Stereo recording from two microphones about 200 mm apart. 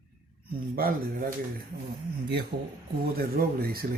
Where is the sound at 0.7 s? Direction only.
45° right (ahead or behind).